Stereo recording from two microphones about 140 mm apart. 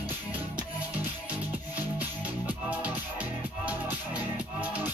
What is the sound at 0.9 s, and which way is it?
Music, 10° right (ahead or behind).